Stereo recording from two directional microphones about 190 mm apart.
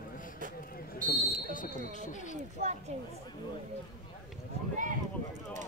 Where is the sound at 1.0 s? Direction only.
45° left (ahead or behind).